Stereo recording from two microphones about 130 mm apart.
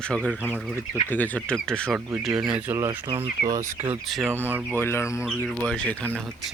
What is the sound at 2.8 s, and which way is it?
Speech, 20° right (ahead or behind).